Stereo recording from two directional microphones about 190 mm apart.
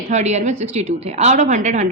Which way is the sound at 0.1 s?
35° right (ahead or behind).